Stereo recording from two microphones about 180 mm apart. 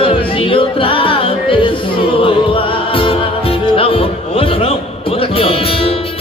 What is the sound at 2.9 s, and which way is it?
Music, 30° left (ahead or behind).